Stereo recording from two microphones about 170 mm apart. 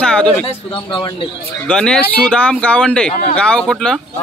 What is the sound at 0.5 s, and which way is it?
Speech, 30° left (ahead or behind).